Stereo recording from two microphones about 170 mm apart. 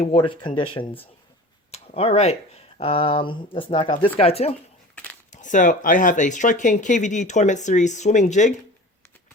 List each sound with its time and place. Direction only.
0.0 s speech: 30° left (ahead or behind)
5.3 s speech: 50° left (ahead or behind)